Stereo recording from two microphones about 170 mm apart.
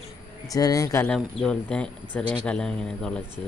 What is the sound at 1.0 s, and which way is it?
Speech, 5° left (ahead or behind).